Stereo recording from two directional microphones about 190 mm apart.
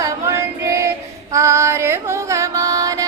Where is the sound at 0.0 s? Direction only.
15° right (ahead or behind).